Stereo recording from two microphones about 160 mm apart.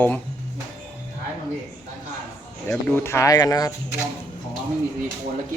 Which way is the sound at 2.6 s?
15° left (ahead or behind).